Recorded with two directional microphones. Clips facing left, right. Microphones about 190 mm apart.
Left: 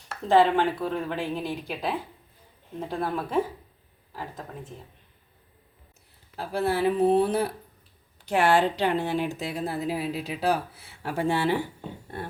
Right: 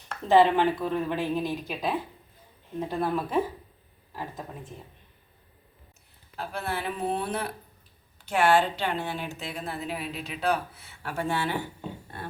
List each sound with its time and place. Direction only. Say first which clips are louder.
0.1 s speech: even; centre (ahead or behind)
6.3 s speech: left 6 dB; 35° left (ahead or behind)